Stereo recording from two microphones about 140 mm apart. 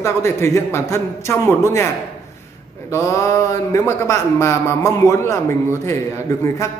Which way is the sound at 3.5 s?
20° left (ahead or behind).